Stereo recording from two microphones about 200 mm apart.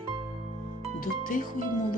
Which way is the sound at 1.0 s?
45° left (ahead or behind).